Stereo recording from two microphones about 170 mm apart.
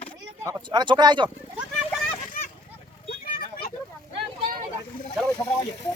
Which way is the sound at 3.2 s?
60° left (ahead or behind).